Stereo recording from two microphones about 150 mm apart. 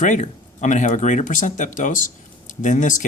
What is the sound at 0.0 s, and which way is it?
Speech, 55° left (ahead or behind).